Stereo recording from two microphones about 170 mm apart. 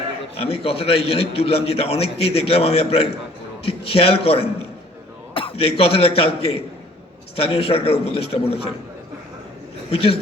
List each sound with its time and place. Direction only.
0.3 s a man's voice: 35° left (ahead or behind)
9.9 s a man's voice: 35° left (ahead or behind)